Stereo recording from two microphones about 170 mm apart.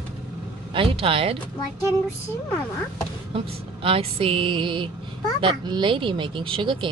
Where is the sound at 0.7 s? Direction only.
30° right (ahead or behind).